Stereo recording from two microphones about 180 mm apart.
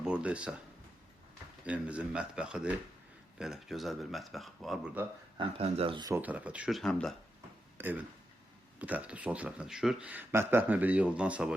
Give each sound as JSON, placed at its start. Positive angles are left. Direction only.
{"t": 0.0, "sound": "speech", "side_deg": -5}
{"t": 1.6, "sound": "speech", "side_deg": -5}
{"t": 5.4, "sound": "speech", "side_deg": -30}
{"t": 6.1, "sound": "speech", "side_deg": -10}
{"t": 7.8, "sound": "speech", "side_deg": -10}